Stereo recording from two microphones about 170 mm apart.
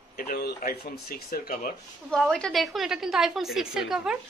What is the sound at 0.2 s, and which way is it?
Speech, 60° left (ahead or behind).